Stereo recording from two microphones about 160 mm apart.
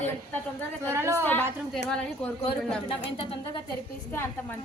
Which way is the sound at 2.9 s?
35° left (ahead or behind).